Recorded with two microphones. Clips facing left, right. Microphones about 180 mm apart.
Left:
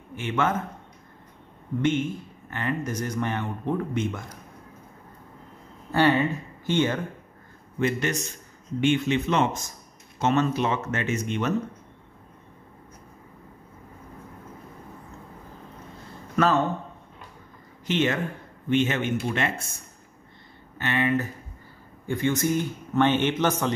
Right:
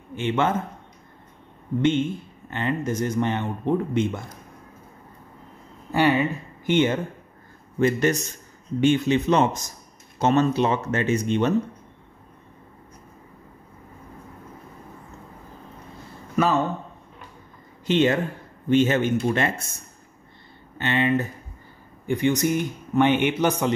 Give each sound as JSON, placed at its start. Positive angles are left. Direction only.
{"t": 0.1, "sound": "a man's voice", "side_deg": -25}
{"t": 1.8, "sound": "speech", "side_deg": -25}
{"t": 5.9, "sound": "speech", "side_deg": -10}
{"t": 7.8, "sound": "speech", "side_deg": -40}
{"t": 16.3, "sound": "speech", "side_deg": -10}
{"t": 17.8, "sound": "speech", "side_deg": -30}
{"t": 20.7, "sound": "speech", "side_deg": -25}
{"t": 22.0, "sound": "a man's voice", "side_deg": -15}